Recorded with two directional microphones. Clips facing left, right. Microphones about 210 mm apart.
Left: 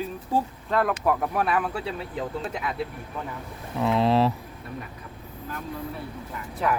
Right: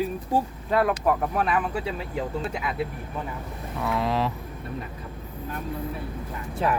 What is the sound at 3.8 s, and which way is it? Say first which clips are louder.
Speech: left 5 dB; 25° left (ahead or behind).